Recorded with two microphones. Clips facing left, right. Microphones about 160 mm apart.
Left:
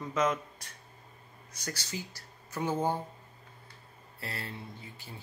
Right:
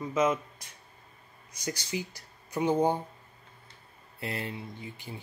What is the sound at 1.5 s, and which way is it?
Speech, 10° right (ahead or behind).